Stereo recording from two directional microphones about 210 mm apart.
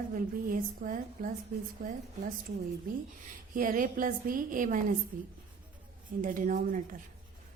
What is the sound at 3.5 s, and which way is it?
A woman's voice, 40° right (ahead or behind).